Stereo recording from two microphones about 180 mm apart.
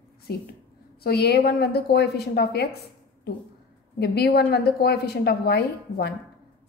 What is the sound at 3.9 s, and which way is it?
A woman's voice, 65° left (ahead or behind).